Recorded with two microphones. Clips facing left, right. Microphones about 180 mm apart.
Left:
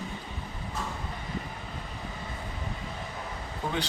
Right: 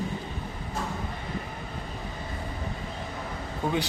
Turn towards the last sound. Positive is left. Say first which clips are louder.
# right 4 dB
turn(degrees=-15)  # may be behind; listen again after turning